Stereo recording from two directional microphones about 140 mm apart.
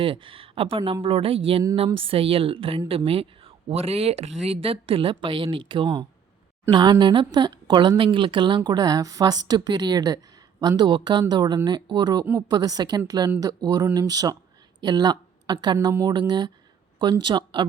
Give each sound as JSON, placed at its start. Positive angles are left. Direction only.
{"t": 0.0, "sound": "a woman's voice", "side_deg": -40}
{"t": 12.2, "sound": "speech", "side_deg": -15}
{"t": 12.5, "sound": "a woman's voice", "side_deg": -30}
{"t": 14.8, "sound": "a sound", "side_deg": -30}
{"t": 15.6, "sound": "a woman's voice", "side_deg": -30}